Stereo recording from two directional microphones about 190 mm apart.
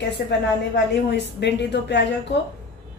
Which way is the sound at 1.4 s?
65° left (ahead or behind).